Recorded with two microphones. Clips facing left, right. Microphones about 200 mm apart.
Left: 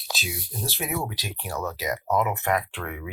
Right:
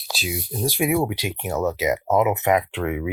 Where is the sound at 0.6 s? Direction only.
15° right (ahead or behind).